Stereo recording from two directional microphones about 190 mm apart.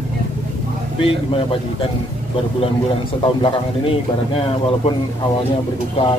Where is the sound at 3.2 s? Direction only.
25° left (ahead or behind).